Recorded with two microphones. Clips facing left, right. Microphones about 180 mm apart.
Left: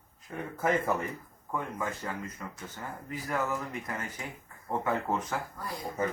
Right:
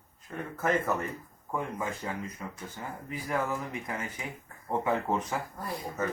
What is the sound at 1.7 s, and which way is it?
Speech, 10° right (ahead or behind).